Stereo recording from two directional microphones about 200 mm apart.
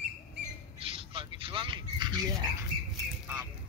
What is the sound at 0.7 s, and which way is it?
Frog, 30° right (ahead or behind).